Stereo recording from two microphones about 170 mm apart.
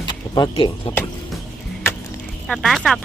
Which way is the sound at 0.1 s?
25° left (ahead or behind).